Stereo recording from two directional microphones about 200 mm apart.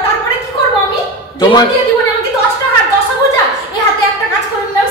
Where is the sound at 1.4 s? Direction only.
20° left (ahead or behind).